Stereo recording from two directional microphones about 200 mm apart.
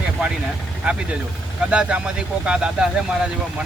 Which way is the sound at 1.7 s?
5° right (ahead or behind).